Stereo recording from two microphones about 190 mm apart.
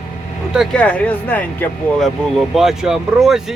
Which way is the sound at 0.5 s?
Centre (ahead or behind).